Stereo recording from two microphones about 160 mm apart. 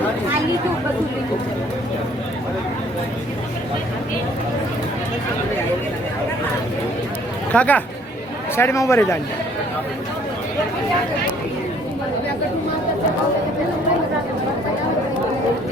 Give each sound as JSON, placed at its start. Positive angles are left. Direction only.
{"t": 7.5, "sound": "a man's voice", "side_deg": 10}